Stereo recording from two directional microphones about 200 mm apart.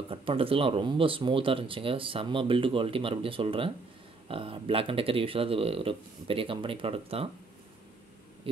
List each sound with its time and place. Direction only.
0.1 s speech: 25° right (ahead or behind)